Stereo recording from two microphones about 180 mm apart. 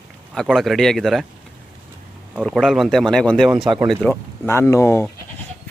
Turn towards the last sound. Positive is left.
turn(degrees=15)  # may be behind; listen again after turning